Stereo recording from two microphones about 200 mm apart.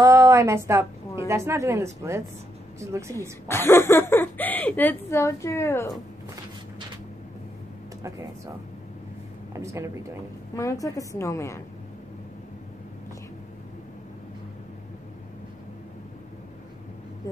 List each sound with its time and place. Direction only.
0.0 s a woman's voice: 15° right (ahead or behind)
3.4 s speech: 10° left (ahead or behind)
9.5 s a woman's voice: 15° right (ahead or behind)
10.5 s speech: 15° left (ahead or behind)